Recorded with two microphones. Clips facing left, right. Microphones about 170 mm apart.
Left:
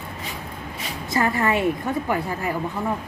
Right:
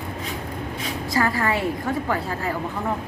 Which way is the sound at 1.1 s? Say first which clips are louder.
Left 1 dB; 20° left (ahead or behind).